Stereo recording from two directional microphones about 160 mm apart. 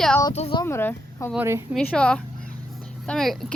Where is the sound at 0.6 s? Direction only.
15° left (ahead or behind).